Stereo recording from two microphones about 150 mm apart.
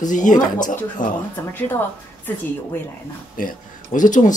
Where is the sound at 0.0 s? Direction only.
55° left (ahead or behind).